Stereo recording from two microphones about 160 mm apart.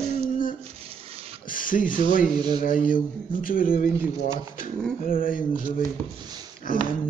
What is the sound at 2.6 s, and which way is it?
Speech, 60° left (ahead or behind).